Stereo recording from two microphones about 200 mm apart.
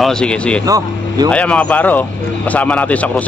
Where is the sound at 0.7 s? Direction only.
15° right (ahead or behind).